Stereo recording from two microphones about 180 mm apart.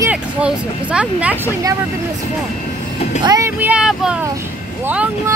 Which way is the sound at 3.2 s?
20° right (ahead or behind).